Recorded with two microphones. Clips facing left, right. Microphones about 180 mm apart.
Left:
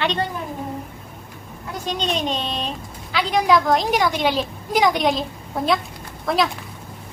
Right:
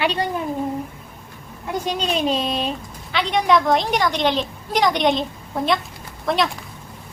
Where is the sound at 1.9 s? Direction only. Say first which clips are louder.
Right 1 dB; 5° right (ahead or behind).